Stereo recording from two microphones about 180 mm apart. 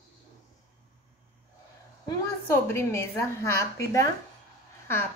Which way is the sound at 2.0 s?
15° left (ahead or behind).